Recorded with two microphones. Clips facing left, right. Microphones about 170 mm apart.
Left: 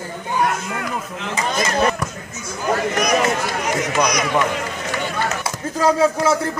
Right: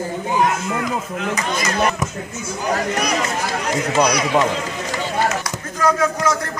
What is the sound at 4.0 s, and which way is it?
Speech, 30° right (ahead or behind).